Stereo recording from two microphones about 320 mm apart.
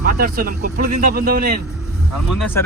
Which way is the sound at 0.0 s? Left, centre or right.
Right.